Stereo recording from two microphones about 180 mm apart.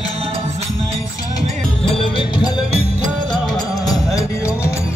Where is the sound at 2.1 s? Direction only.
25° left (ahead or behind).